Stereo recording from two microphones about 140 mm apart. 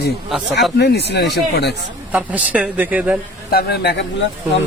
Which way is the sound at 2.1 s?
10° right (ahead or behind).